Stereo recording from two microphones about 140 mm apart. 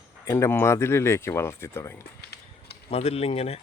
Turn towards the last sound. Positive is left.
turn(degrees=45)  # may be behind; listen again after turning